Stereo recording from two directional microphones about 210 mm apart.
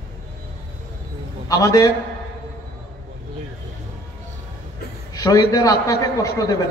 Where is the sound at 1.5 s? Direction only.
15° left (ahead or behind).